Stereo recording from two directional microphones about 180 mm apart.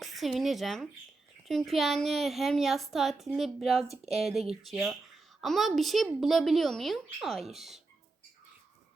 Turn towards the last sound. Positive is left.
turn(degrees=0)  # may be behind; listen again after turning